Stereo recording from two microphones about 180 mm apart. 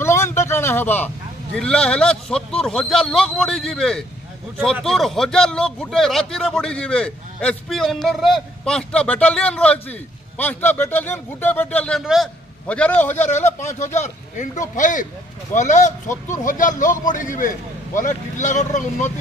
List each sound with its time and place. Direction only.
0.0 s a sound: 15° left (ahead or behind)
0.5 s a man's voice: 15° left (ahead or behind)
13.3 s a man's voice: 40° left (ahead or behind)